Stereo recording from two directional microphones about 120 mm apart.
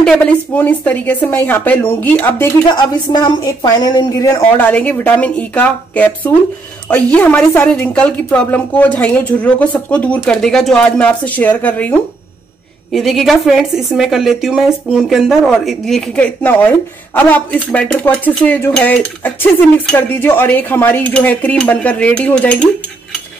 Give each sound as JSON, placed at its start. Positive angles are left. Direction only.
{"t": 0.0, "sound": "dishes", "side_deg": 5}
{"t": 2.7, "sound": "a woman's voice", "side_deg": 35}
{"t": 4.6, "sound": "dishes", "side_deg": 15}
{"t": 12.9, "sound": "a woman's voice", "side_deg": 0}
{"t": 17.1, "sound": "dishes", "side_deg": 10}